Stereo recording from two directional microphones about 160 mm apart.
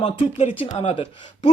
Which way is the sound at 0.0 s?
35° left (ahead or behind).